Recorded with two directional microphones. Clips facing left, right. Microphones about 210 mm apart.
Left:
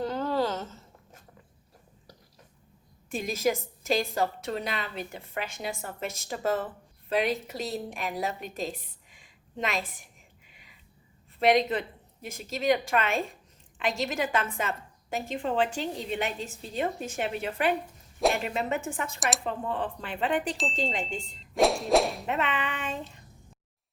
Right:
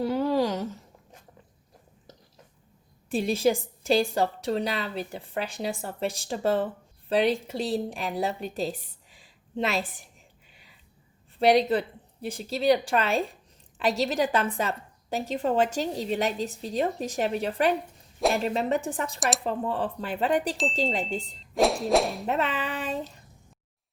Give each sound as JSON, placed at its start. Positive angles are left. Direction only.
{"t": 0.0, "sound": "a sound", "side_deg": -10}
{"t": 3.1, "sound": "a woman's voice", "side_deg": -30}
{"t": 9.1, "sound": "a sound", "side_deg": -35}
{"t": 11.3, "sound": "a woman's voice", "side_deg": -35}
{"t": 18.2, "sound": "speech", "side_deg": 0}
{"t": 18.4, "sound": "a woman's voice", "side_deg": -35}
{"t": 21.5, "sound": "whip", "side_deg": 0}
{"t": 22.3, "sound": "a woman's voice", "side_deg": -35}